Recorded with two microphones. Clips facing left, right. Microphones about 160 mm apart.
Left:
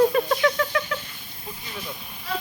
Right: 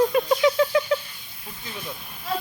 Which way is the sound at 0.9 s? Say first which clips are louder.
Right 8 dB; 25° right (ahead or behind).